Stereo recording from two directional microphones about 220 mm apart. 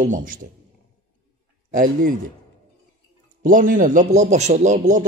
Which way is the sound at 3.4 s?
40° right (ahead or behind).